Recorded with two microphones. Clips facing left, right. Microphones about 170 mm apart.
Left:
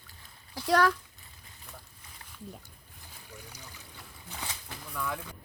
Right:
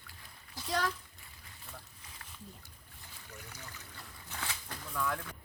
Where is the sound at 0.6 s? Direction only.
75° left (ahead or behind).